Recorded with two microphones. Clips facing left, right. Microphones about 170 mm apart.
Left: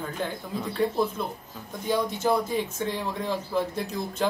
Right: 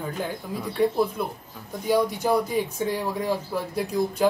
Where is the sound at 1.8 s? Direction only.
15° right (ahead or behind).